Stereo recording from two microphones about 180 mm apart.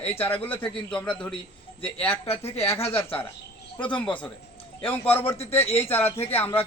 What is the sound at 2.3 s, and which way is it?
Speech, 35° left (ahead or behind).